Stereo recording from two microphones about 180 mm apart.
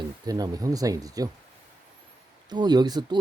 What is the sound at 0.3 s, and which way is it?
Speech, 20° right (ahead or behind).